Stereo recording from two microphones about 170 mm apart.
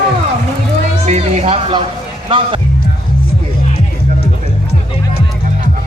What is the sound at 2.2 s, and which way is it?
Speech, 30° right (ahead or behind).